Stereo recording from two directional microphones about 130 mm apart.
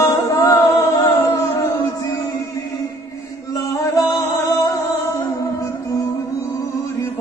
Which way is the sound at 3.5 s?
25° left (ahead or behind).